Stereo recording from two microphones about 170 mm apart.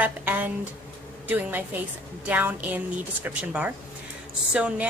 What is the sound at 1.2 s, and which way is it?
A woman's voice, 10° right (ahead or behind).